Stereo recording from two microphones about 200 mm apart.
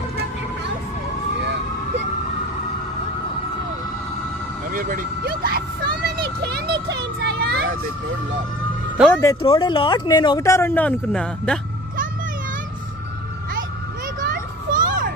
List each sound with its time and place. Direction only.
4.7 s vehicle: 45° right (ahead or behind)
8.9 s speech: 5° right (ahead or behind)
9.4 s speech: 25° left (ahead or behind); by 11.6 s 5° left (ahead or behind)
14.2 s children playing: 45° right (ahead or behind)